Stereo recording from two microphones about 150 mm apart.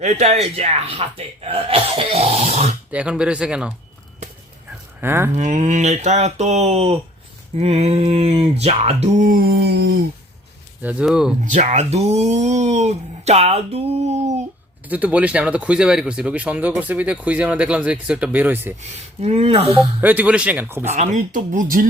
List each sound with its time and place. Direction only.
0.0 s speech: 45° right (ahead or behind)
1.5 s grunt: 40° right (ahead or behind)
2.9 s speech: 5° right (ahead or behind)
4.9 s speech: 15° right (ahead or behind)
5.3 s speech: 55° right (ahead or behind); by 9.8 s 90° right
10.8 s speech: 5° right (ahead or behind)
11.5 s speech: 55° right (ahead or behind)
14.8 s speech: 10° right (ahead or behind)
18.8 s grunt: 45° right (ahead or behind)
20.0 s speech: 10° right (ahead or behind)
20.8 s speech: 50° right (ahead or behind)